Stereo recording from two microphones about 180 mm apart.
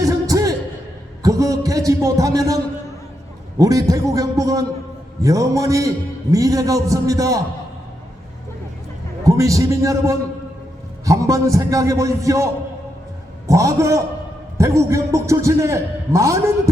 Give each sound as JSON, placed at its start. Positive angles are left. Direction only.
{"t": 0.0, "sound": "a sound", "side_deg": -20}
{"t": 3.6, "sound": "a man's voice", "side_deg": -20}
{"t": 9.2, "sound": "a man's voice", "side_deg": -20}
{"t": 13.5, "sound": "a man's voice", "side_deg": -15}